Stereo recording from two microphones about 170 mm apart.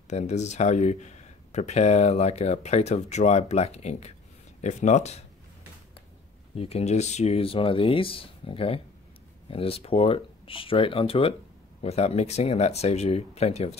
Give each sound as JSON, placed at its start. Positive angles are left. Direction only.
{"t": 0.1, "sound": "speech", "side_deg": 40}
{"t": 6.5, "sound": "speech", "side_deg": 35}